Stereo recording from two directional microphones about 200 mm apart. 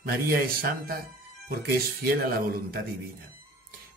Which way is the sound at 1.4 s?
50° right (ahead or behind).